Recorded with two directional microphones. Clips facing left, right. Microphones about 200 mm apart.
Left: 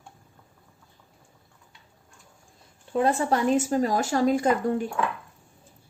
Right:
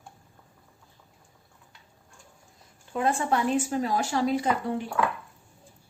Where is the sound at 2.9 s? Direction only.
35° left (ahead or behind).